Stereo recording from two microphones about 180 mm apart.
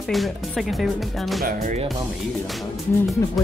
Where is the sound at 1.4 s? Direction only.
50° right (ahead or behind).